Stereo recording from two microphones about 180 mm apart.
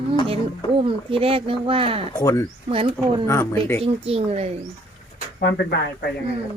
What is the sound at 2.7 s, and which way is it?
Speech, 30° right (ahead or behind).